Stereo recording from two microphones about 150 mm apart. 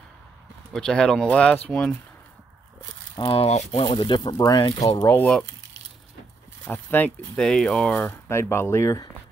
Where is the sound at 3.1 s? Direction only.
30° left (ahead or behind).